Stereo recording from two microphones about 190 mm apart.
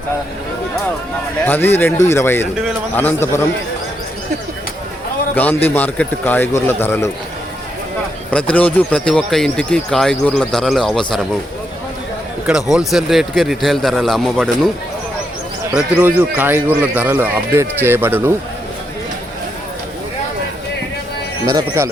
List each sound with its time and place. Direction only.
1.5 s speech: 10° left (ahead or behind)
5.3 s a man's voice: 10° left (ahead or behind)
8.5 s speech: 5° left (ahead or behind)
12.5 s speech: 5° right (ahead or behind)
15.7 s speech: 10° right (ahead or behind)
21.4 s speech: 20° right (ahead or behind)